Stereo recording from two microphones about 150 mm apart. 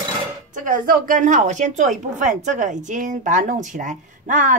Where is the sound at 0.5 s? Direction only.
65° right (ahead or behind).